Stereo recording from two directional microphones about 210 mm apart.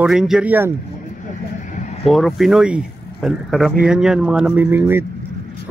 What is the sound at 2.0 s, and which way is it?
Speech, centre (ahead or behind).